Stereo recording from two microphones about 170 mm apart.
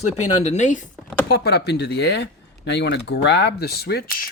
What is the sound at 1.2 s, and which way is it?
Speech, 70° left (ahead or behind).